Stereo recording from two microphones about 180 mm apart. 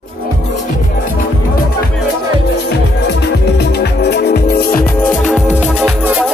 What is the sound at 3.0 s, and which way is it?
Music, 70° left (ahead or behind).